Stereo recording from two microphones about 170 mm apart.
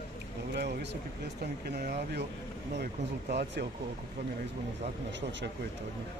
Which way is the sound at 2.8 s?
75° right (ahead or behind).